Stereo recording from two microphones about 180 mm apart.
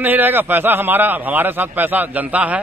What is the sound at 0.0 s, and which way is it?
A man's voice, 10° right (ahead or behind).